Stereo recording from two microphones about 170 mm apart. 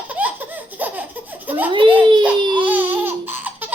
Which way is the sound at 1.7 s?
30° right (ahead or behind).